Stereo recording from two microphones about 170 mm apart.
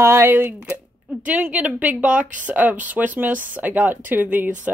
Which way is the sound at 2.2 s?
50° right (ahead or behind).